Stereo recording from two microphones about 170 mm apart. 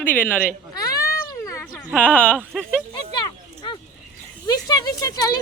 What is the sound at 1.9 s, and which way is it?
Speech, 10° left (ahead or behind).